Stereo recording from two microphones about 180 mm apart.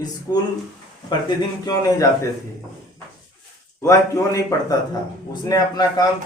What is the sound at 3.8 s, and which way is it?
A man's voice, 15° left (ahead or behind).